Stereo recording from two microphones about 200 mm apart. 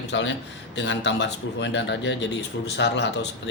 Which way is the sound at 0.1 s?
65° left (ahead or behind).